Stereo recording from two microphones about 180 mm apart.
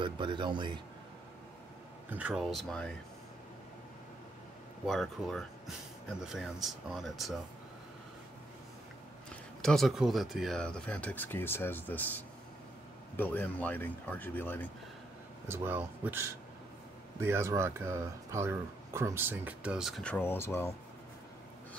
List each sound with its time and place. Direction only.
0.0 s speech: 25° right (ahead or behind)
2.0 s speech: 10° right (ahead or behind)
4.8 s speech: centre (ahead or behind)
9.6 s speech: 5° left (ahead or behind)
15.4 s speech: 10° right (ahead or behind); by 20.7 s 15° left (ahead or behind)